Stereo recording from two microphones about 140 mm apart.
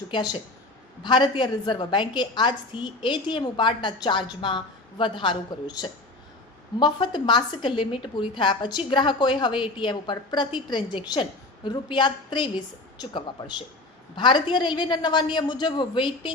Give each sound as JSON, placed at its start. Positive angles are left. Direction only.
{"t": 1.0, "sound": "a woman's voice", "side_deg": 35}